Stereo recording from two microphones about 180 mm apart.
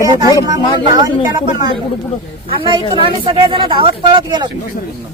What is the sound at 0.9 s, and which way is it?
Speech, 20° right (ahead or behind).